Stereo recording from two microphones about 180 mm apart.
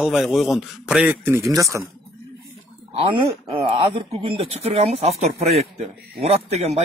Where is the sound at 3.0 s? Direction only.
30° right (ahead or behind).